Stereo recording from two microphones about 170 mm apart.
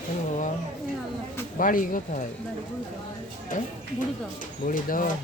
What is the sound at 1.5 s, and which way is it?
Speech, 55° left (ahead or behind).